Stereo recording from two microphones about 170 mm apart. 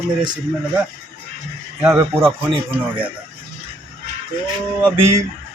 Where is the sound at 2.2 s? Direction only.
30° right (ahead or behind).